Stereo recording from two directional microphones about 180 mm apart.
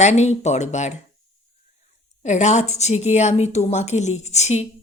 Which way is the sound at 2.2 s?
40° left (ahead or behind).